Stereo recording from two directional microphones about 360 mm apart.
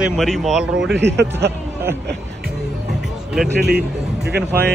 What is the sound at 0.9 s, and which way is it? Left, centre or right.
Speech, right.